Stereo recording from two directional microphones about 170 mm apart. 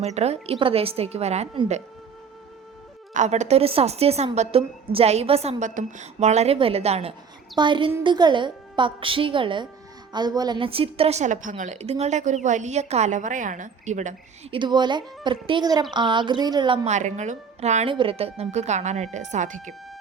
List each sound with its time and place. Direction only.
0.0 s a woman's voice: 40° right (ahead or behind)
3.1 s a woman's voice: 45° right (ahead or behind)
14.5 s speech: 25° right (ahead or behind)
16.9 s a woman's voice: 45° right (ahead or behind)